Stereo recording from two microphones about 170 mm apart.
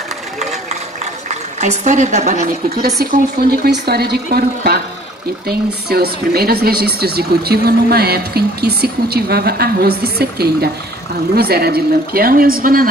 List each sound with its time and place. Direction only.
1.6 s a woman's voice: 45° right (ahead or behind)
3.0 s speech: 65° right (ahead or behind)